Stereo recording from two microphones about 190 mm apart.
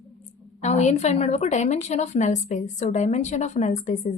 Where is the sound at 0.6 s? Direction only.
35° left (ahead or behind).